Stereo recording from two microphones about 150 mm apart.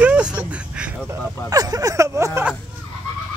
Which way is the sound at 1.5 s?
25° right (ahead or behind).